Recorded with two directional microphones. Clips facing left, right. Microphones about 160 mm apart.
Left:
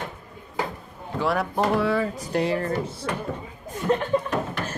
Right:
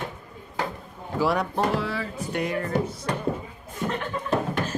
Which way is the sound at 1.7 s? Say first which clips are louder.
Left 5 dB; 55° left (ahead or behind).